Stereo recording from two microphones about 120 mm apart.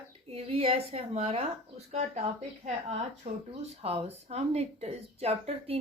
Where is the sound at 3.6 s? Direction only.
60° right (ahead or behind).